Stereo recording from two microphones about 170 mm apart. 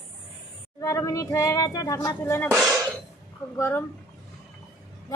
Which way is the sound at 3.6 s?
10° left (ahead or behind).